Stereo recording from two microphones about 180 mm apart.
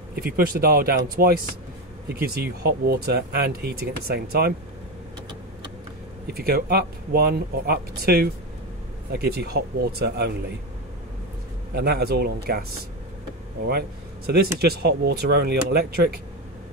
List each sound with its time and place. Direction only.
0.1 s speech: 55° right (ahead or behind)
6.3 s speech: 60° right (ahead or behind)
11.7 s speech: 60° right (ahead or behind)
13.7 s speech: 60° right (ahead or behind)